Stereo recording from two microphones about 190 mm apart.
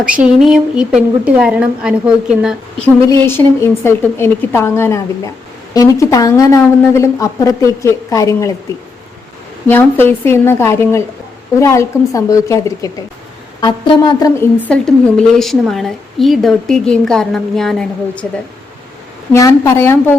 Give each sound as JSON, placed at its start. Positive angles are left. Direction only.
{"t": 0.2, "sound": "a woman's voice", "side_deg": -5}
{"t": 2.8, "sound": "a woman's voice", "side_deg": 10}
{"t": 9.6, "sound": "a woman's voice", "side_deg": 10}
{"t": 15.4, "sound": "a woman's voice", "side_deg": 0}
{"t": 19.3, "sound": "a woman's voice", "side_deg": 15}